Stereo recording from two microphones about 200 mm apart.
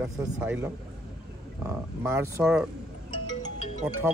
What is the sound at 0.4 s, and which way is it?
Speech, 10° right (ahead or behind).